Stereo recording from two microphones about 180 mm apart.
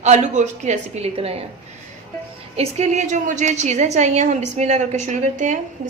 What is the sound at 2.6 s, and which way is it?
A woman's voice, 40° right (ahead or behind).